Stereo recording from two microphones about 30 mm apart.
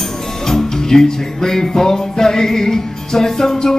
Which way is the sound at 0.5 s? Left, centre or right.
Centre.